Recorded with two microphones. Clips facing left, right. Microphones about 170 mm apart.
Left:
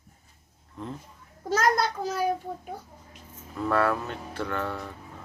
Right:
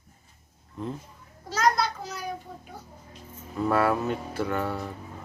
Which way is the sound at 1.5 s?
50° left (ahead or behind).